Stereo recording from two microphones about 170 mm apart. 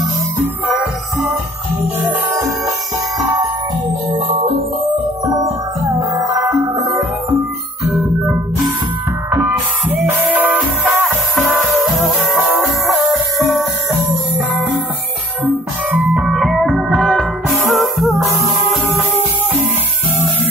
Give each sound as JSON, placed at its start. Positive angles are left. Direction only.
{"t": 5.2, "sound": "music", "side_deg": -20}
{"t": 9.3, "sound": "music", "side_deg": -15}
{"t": 15.4, "sound": "music", "side_deg": -10}